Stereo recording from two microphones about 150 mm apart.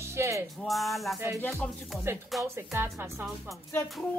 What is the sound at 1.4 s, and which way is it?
Music, 15° left (ahead or behind).